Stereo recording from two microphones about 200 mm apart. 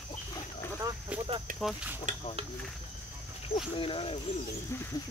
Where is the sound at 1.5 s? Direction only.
5° right (ahead or behind).